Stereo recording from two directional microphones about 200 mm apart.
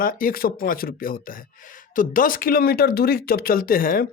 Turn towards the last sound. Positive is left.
turn(degrees=45)  # may be behind; listen again after turning